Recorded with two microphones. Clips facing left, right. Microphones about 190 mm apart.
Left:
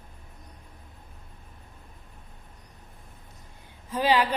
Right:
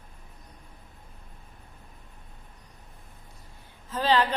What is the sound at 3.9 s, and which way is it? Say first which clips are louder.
Speech: left 1 dB; 10° left (ahead or behind).